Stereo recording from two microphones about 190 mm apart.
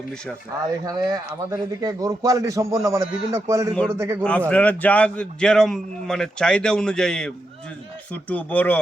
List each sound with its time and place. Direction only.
0.9 s a man's voice: 20° right (ahead or behind)
4.2 s a man's voice: 10° left (ahead or behind)